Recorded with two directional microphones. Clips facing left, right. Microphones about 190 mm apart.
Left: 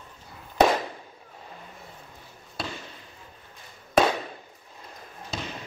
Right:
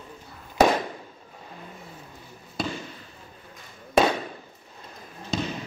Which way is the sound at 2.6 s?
Centre (ahead or behind).